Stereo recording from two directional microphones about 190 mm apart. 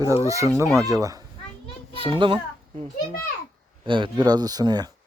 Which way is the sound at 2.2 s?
25° right (ahead or behind).